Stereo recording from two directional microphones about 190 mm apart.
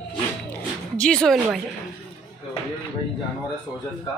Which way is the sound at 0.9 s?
5° left (ahead or behind).